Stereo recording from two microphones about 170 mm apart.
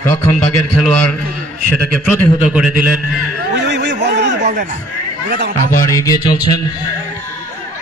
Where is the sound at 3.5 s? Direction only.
90° right.